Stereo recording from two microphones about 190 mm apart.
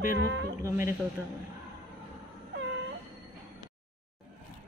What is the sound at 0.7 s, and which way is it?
Speech, 15° right (ahead or behind).